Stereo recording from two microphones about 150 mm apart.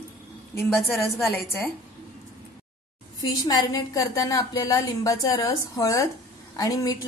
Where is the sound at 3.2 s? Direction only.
25° left (ahead or behind).